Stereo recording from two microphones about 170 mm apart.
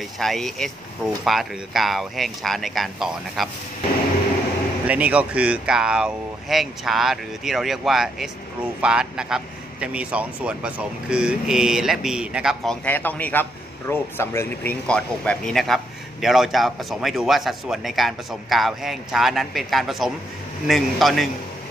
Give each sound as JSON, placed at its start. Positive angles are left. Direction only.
{"t": 0.2, "sound": "a man's voice", "side_deg": 0}
{"t": 4.8, "sound": "a man's voice", "side_deg": -10}
{"t": 12.8, "sound": "a man's voice", "side_deg": 10}